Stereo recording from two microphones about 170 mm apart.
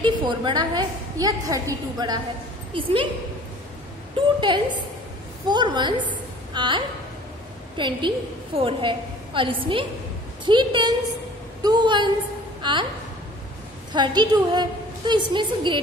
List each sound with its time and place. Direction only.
0.0 s a woman's voice: 25° right (ahead or behind)
4.4 s a woman's voice: 25° right (ahead or behind)
13.9 s a woman's voice: 25° right (ahead or behind)